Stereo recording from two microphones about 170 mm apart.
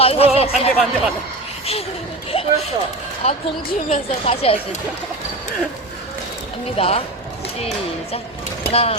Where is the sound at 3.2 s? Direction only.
35° left (ahead or behind).